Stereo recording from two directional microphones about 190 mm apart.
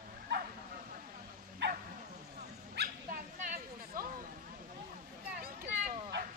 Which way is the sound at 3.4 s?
45° right (ahead or behind).